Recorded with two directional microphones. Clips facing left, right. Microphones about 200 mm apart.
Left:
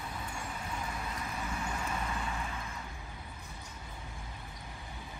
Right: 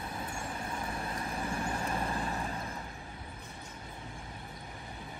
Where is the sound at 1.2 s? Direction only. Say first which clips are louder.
Right 4 dB; 30° right (ahead or behind).